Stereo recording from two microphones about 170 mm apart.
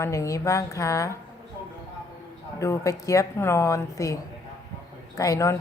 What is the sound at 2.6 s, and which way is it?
A woman's voice, 15° left (ahead or behind).